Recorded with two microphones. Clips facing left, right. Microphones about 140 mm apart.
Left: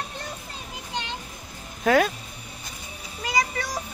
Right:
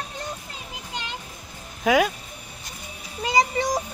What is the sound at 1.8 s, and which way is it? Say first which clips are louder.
Speech: even; 10° right (ahead or behind).